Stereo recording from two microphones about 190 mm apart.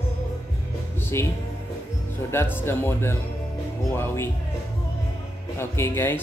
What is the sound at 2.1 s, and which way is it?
Speech, 10° left (ahead or behind).